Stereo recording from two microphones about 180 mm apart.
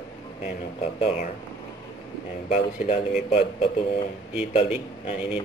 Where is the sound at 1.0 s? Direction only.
35° left (ahead or behind).